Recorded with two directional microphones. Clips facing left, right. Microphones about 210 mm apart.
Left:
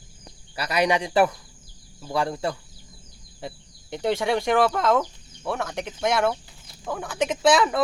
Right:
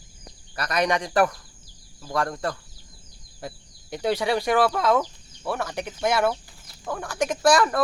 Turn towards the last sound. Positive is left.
turn(degrees=0)  # may be behind; listen again after turning